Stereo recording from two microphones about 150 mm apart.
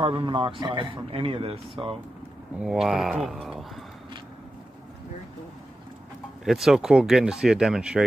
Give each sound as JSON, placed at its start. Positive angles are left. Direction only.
{"t": 0.0, "sound": "a man's voice", "side_deg": -35}
{"t": 2.6, "sound": "speech", "side_deg": -5}
{"t": 6.4, "sound": "speech", "side_deg": 0}